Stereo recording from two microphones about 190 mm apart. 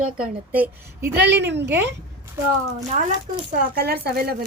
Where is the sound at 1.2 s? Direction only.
65° right (ahead or behind).